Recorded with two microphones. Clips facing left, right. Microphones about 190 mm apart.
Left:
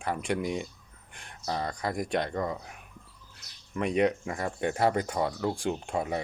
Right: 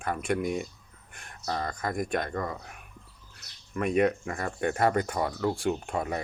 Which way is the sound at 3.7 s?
15° left (ahead or behind).